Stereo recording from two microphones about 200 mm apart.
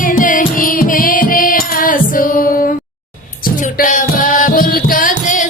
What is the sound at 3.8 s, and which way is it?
Music, 40° left (ahead or behind).